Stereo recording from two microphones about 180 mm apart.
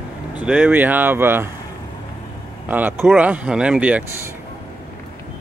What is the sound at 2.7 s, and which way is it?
Speech, 10° right (ahead or behind).